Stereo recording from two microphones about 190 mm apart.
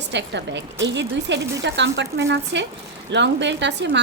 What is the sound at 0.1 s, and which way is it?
A woman's voice, 65° right (ahead or behind).